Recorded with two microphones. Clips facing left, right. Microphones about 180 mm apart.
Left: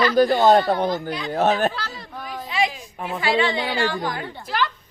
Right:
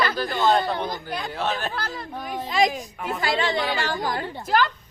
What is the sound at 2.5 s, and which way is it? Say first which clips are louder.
A woman's voice: right 2 dB; 40° right (ahead or behind).